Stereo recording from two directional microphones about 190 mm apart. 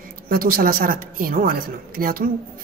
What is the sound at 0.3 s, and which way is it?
A woman's voice, 50° right (ahead or behind).